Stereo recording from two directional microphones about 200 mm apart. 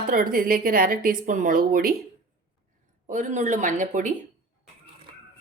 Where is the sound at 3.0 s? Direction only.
35° right (ahead or behind).